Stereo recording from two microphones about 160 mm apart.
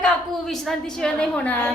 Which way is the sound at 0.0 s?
Centre (ahead or behind).